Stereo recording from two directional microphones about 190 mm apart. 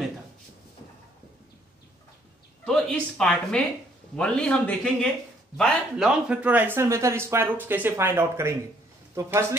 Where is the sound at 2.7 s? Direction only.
5° left (ahead or behind).